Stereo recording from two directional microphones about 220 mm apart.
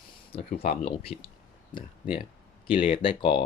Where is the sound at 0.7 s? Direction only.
25° left (ahead or behind).